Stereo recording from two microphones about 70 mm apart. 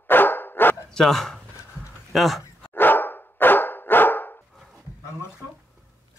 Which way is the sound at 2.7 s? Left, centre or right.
Left.